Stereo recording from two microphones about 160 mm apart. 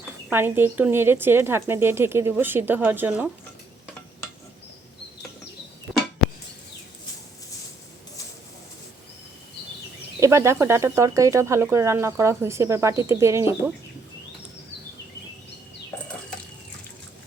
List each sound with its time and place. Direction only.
0.3 s speech: 15° right (ahead or behind)
10.2 s speech: 20° right (ahead or behind)